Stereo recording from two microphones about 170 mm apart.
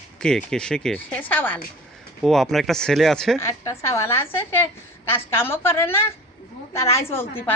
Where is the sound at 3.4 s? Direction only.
15° left (ahead or behind).